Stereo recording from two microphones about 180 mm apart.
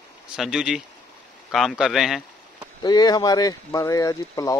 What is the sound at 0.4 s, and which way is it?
A man's voice, 5° right (ahead or behind).